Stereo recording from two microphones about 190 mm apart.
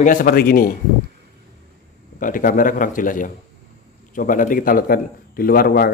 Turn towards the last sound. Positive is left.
turn(degrees=55)  # may be behind; listen again after turning